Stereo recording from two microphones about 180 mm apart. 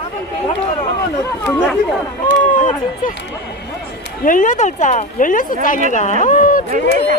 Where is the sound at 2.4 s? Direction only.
45° left (ahead or behind).